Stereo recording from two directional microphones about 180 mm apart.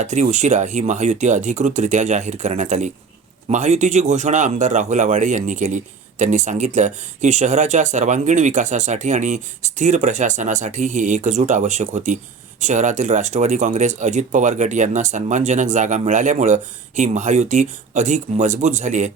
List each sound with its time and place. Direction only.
0.0 s speech: 40° right (ahead or behind)